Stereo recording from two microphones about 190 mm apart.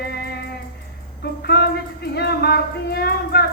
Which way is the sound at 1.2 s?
55° left (ahead or behind).